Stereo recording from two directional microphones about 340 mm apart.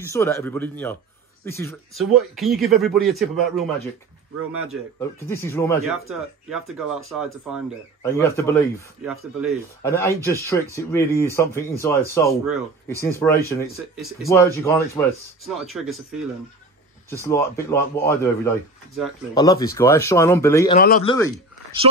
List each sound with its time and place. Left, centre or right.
0.0 s speech: centre
5.3 s speech: centre
8.0 s speech: centre
17.1 s speech: centre
20.7 s speech: left